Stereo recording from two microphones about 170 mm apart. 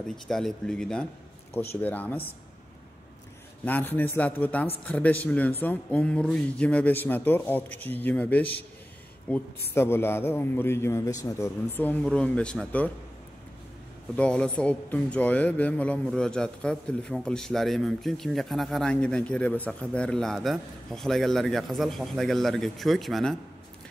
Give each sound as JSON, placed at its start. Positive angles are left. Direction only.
{"t": 0.1, "sound": "a man's voice", "side_deg": 0}
{"t": 3.6, "sound": "a man's voice", "side_deg": 10}
{"t": 14.1, "sound": "speech", "side_deg": 5}